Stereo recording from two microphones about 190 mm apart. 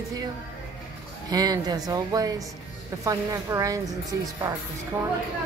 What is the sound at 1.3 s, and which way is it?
A woman's voice, 20° right (ahead or behind).